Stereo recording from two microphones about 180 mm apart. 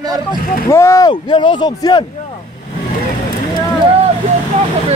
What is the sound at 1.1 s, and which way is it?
Speech, 25° left (ahead or behind).